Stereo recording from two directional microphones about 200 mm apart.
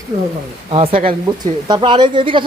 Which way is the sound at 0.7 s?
30° right (ahead or behind).